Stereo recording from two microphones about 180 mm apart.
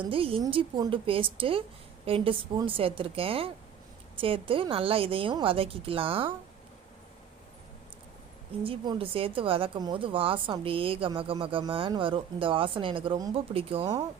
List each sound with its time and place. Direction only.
0.0 s a woman's voice: 30° right (ahead or behind)
8.6 s a woman's voice: 25° right (ahead or behind)